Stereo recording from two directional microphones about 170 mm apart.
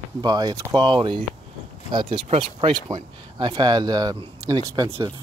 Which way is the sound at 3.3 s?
25° right (ahead or behind).